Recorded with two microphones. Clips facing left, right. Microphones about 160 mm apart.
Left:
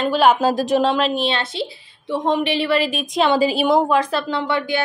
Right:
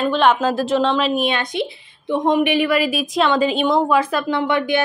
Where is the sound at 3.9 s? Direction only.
10° right (ahead or behind).